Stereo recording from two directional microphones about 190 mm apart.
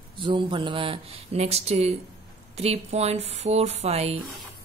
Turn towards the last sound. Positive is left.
turn(degrees=-35)  # may be behind; listen again after turning